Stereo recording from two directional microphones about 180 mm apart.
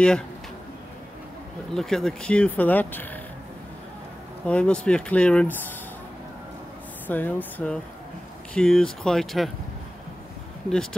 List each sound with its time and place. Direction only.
1.7 s speech: centre (ahead or behind)
4.5 s speech: 5° left (ahead or behind)
7.1 s speech: 10° left (ahead or behind)
10.7 s speech: 5° left (ahead or behind)